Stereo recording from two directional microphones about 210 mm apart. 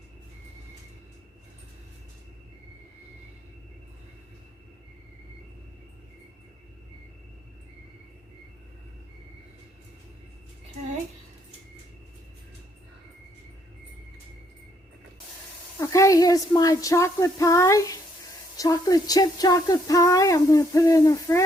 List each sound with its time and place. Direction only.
15.8 s speech: 15° left (ahead or behind)